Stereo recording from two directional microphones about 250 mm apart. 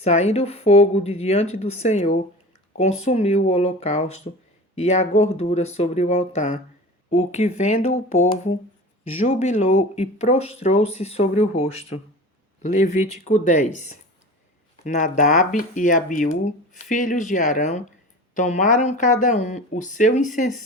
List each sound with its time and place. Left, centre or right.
0.0 s speech: left